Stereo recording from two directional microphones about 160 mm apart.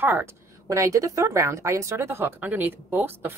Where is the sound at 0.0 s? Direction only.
15° right (ahead or behind).